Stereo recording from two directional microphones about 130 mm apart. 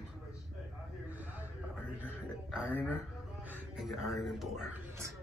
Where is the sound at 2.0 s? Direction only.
10° right (ahead or behind).